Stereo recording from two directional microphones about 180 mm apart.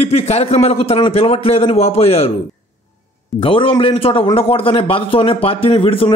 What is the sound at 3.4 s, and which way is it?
A man's voice, 30° left (ahead or behind).